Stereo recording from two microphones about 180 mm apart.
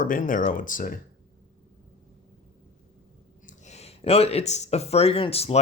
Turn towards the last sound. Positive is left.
turn(degrees=35)  # may be behind; listen again after turning